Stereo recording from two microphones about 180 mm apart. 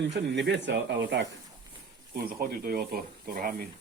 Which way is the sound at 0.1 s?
75° right (ahead or behind).